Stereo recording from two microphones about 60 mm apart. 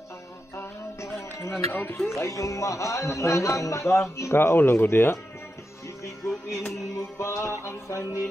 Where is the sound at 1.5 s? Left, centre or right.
Left.